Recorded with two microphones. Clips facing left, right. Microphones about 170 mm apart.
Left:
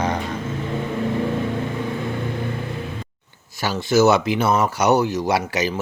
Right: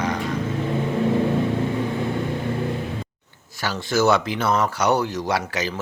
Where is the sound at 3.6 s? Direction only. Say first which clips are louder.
Left 4 dB; 10° left (ahead or behind).